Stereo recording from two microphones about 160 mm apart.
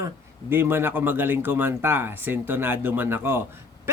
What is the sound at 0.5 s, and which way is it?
Speech, 15° right (ahead or behind).